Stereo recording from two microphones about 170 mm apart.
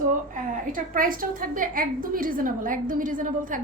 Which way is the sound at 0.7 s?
55° right (ahead or behind).